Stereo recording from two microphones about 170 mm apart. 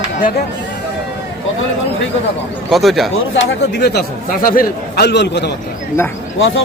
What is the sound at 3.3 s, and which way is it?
A man's voice, 70° left (ahead or behind).